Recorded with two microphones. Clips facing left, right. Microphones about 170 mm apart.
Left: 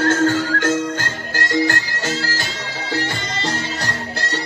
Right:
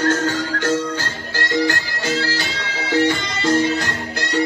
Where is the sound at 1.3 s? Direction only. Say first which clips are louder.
Even; 45° left (ahead or behind).